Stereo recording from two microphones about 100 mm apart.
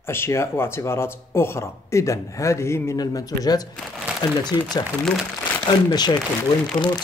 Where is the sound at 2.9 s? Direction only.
40° left (ahead or behind).